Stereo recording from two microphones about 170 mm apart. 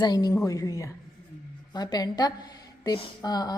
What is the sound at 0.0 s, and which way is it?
A woman's voice, 20° left (ahead or behind).